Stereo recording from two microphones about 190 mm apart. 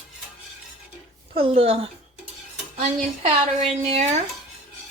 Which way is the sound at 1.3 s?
30° right (ahead or behind).